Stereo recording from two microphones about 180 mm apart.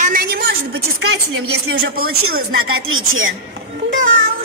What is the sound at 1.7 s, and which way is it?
Speech, 60° right (ahead or behind).